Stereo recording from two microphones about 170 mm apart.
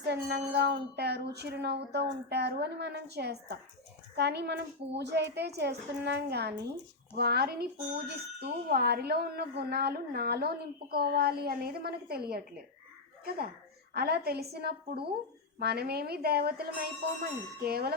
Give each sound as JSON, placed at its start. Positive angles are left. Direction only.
{"t": 0.1, "sound": "a child's voice", "side_deg": -70}
{"t": 13.9, "sound": "a woman's voice", "side_deg": -65}